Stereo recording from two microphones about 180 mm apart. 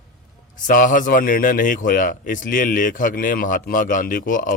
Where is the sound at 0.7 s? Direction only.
50° left (ahead or behind).